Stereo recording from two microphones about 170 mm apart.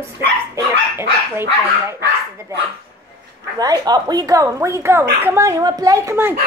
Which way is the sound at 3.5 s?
25° right (ahead or behind).